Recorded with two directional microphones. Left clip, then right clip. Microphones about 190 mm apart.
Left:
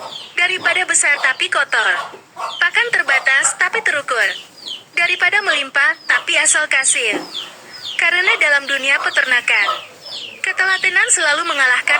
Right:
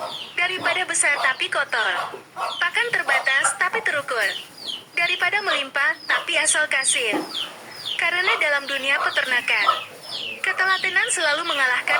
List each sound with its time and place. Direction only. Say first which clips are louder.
0.3 s speech: left 7 dB; 15° left (ahead or behind)